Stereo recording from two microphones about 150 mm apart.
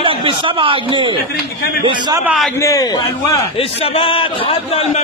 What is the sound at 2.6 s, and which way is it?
Speech, 20° left (ahead or behind).